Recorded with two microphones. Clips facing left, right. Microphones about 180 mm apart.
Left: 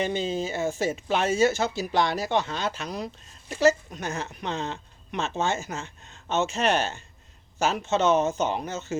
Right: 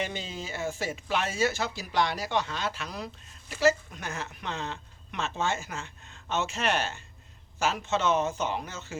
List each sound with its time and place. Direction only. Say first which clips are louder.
0.0 s speech: left 8 dB; 25° left (ahead or behind)
8.1 s speech: left 4 dB; 40° left (ahead or behind)
8.5 s speech: left 5 dB; 25° left (ahead or behind)